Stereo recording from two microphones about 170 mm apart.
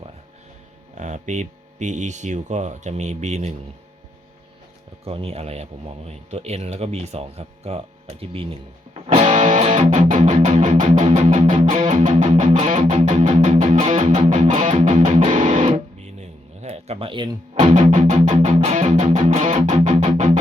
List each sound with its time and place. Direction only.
0.9 s speech: 45° right (ahead or behind)
5.0 s speech: 35° right (ahead or behind)
9.3 s music: 45° right (ahead or behind)
14.8 s speech: 40° right (ahead or behind)